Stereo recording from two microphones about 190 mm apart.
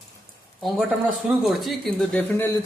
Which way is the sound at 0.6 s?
Centre (ahead or behind).